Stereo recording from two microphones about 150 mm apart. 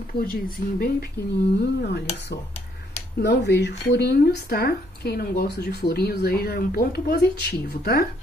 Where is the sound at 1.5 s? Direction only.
90° left.